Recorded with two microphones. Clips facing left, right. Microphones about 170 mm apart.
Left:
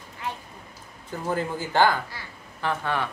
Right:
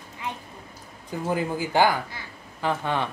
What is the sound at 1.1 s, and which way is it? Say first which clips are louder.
Speech: right 1 dB; 15° right (ahead or behind).